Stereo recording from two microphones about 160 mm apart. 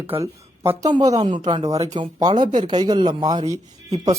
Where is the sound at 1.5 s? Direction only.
40° right (ahead or behind).